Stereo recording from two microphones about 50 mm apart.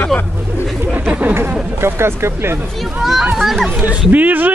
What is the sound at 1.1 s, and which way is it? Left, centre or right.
Speech, right.